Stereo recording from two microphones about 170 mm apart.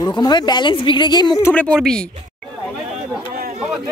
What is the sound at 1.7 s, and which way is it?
Speech, 5° left (ahead or behind).